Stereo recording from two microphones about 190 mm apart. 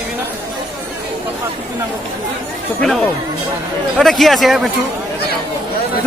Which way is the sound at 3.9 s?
Centre (ahead or behind).